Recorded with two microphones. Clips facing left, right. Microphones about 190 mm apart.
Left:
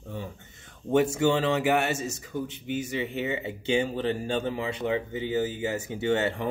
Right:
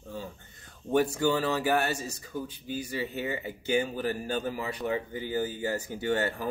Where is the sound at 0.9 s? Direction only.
25° left (ahead or behind).